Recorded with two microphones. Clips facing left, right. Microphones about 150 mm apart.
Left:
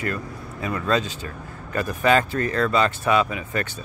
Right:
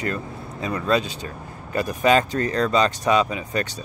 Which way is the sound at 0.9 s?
15° right (ahead or behind).